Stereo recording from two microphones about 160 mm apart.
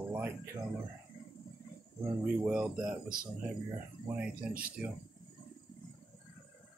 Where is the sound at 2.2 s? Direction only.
5° right (ahead or behind).